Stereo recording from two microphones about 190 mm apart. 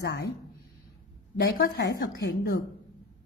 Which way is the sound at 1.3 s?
55° left (ahead or behind).